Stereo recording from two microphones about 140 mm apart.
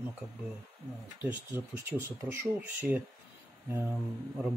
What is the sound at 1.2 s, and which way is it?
Speech, 15° right (ahead or behind).